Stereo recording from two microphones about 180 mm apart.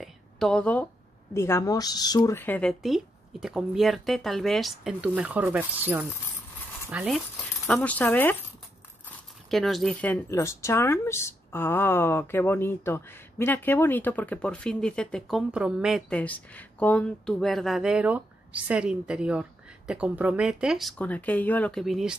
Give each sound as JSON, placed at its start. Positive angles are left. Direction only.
{"t": 0.0, "sound": "a sound", "side_deg": 0}
{"t": 1.3, "sound": "speech", "side_deg": 15}
{"t": 2.8, "sound": "speech", "side_deg": 0}
{"t": 7.6, "sound": "speech", "side_deg": 5}
{"t": 9.5, "sound": "speech", "side_deg": 0}
{"t": 16.1, "sound": "speech", "side_deg": 10}
{"t": 21.0, "sound": "speech", "side_deg": 10}